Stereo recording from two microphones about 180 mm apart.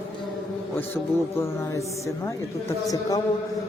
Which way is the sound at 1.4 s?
15° left (ahead or behind).